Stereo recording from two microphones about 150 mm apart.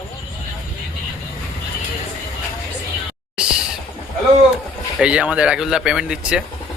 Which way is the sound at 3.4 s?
5° right (ahead or behind).